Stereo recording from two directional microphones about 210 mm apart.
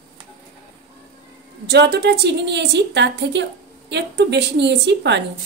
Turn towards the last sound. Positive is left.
turn(degrees=-55)  # may be behind; listen again after turning